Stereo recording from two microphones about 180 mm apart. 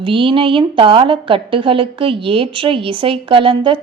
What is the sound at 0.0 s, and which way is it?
A woman's voice, 30° right (ahead or behind).